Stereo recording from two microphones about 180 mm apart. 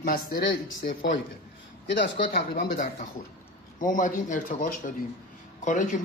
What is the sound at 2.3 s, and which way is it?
A man's voice, 55° left (ahead or behind).